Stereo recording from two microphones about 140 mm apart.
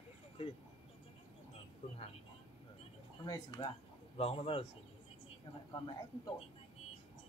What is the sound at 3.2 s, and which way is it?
Speech, 30° left (ahead or behind).